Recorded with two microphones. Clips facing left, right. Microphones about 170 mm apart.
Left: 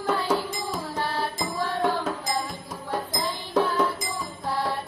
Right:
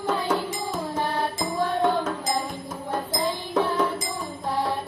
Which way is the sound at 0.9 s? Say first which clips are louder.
Right 2 dB; 20° right (ahead or behind).